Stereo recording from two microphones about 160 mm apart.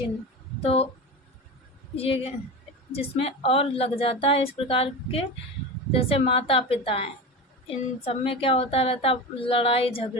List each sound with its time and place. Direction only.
0.6 s speech: 40° left (ahead or behind)
2.0 s a woman's voice: 35° left (ahead or behind)